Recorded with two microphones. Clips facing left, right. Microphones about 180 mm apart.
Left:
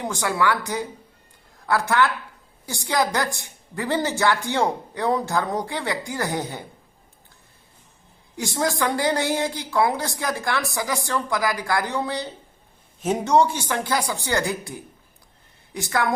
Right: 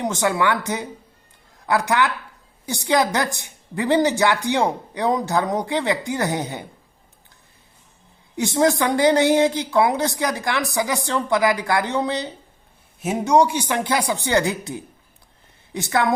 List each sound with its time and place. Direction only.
0.0 s a woman's voice: 20° right (ahead or behind)
8.4 s a woman's voice: 20° right (ahead or behind)
13.0 s a woman's voice: 10° right (ahead or behind)